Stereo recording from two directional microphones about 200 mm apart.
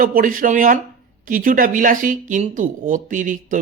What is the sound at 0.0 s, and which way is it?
A woman's voice, 45° right (ahead or behind).